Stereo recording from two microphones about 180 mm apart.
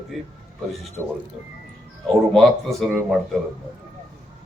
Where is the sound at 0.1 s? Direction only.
Centre (ahead or behind).